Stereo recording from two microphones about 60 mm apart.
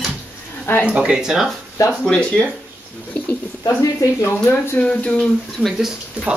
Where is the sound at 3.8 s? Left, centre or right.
Left.